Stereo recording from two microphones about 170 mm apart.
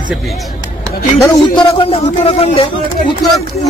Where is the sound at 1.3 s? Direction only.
30° left (ahead or behind).